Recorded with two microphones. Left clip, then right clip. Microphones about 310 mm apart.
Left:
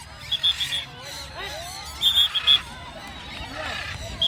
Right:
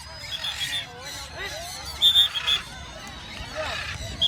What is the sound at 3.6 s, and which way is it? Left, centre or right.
Wild animals, left.